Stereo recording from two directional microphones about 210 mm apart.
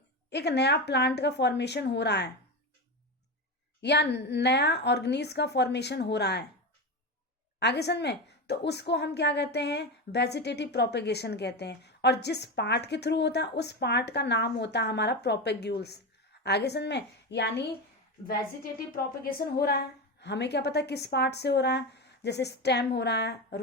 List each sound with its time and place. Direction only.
0.3 s a woman's voice: 55° left (ahead or behind)
3.8 s a woman's voice: 55° left (ahead or behind)
7.6 s a woman's voice: 50° left (ahead or behind)
19.2 s a woman's voice: 50° left (ahead or behind)